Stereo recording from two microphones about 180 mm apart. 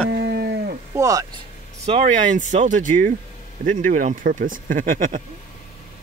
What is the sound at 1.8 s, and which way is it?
Speech, 35° right (ahead or behind).